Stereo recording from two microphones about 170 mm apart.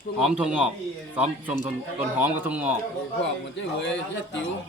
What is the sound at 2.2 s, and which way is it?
Speech, 10° right (ahead or behind).